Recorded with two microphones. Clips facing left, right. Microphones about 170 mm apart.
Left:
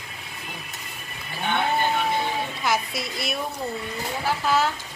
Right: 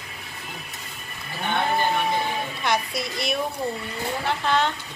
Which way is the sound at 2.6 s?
Centre (ahead or behind).